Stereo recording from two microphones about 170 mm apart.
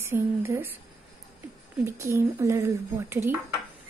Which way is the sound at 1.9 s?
15° right (ahead or behind).